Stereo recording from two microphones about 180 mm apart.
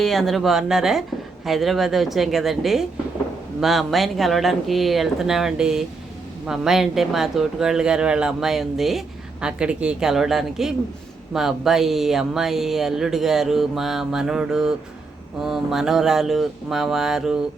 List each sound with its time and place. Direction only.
0.0 s speech: centre (ahead or behind)